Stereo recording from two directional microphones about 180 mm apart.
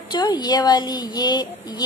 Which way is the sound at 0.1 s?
25° left (ahead or behind).